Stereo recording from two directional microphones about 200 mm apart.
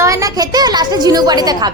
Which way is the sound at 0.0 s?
15° right (ahead or behind).